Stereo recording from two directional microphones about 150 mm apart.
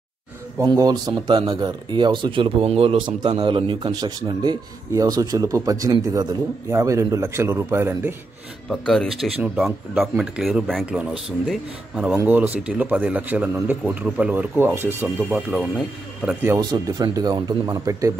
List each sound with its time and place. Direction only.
0.6 s a man's voice: 25° right (ahead or behind)
8.6 s speech: centre (ahead or behind); by 15.4 s 15° right (ahead or behind)
16.4 s a man's voice: 20° right (ahead or behind)